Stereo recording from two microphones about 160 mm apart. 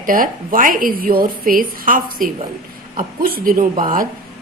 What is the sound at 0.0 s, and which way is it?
A woman's voice, 60° right (ahead or behind).